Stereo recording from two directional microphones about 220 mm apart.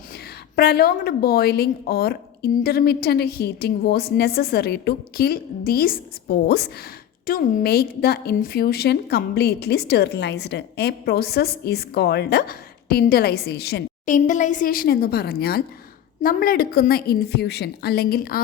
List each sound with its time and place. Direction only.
0.5 s a woman's voice: 45° left (ahead or behind)
14.0 s a woman's voice: 35° left (ahead or behind)